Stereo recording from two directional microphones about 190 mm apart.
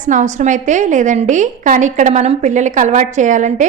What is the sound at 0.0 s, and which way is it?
A woman's voice, 40° right (ahead or behind).